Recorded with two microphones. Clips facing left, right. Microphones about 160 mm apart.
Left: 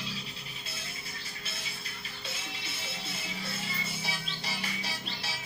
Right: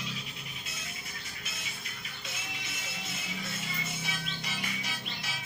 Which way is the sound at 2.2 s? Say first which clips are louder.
Left 1 dB; 30° left (ahead or behind).